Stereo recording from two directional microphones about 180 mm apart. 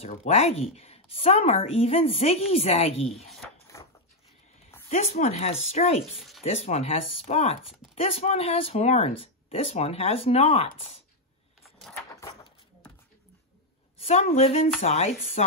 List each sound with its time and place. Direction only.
0.0 s a woman's voice: 35° left (ahead or behind)
3.1 s speech: centre (ahead or behind)
3.7 s a sound: 15° left (ahead or behind)
4.8 s a woman's voice: 40° left (ahead or behind)
6.1 s a sound: centre (ahead or behind)
6.4 s a woman's voice: 35° left (ahead or behind)
13.9 s a woman's voice: 35° left (ahead or behind)